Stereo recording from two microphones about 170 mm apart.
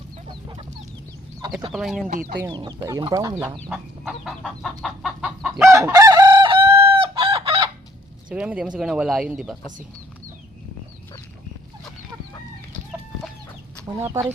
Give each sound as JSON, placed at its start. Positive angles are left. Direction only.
{"t": 1.4, "sound": "speech", "side_deg": -20}
{"t": 1.7, "sound": "speech", "side_deg": 0}
{"t": 2.0, "sound": "speech", "side_deg": -50}
{"t": 2.5, "sound": "speech", "side_deg": -25}
{"t": 3.7, "sound": "speech", "side_deg": -5}
{"t": 4.8, "sound": "chicken", "side_deg": -5}
{"t": 5.5, "sound": "chicken", "side_deg": -15}
{"t": 8.3, "sound": "speech", "side_deg": -5}
{"t": 14.0, "sound": "speech", "side_deg": -15}